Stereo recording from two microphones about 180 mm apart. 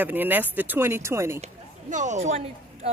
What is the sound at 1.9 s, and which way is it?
Speech, 40° right (ahead or behind).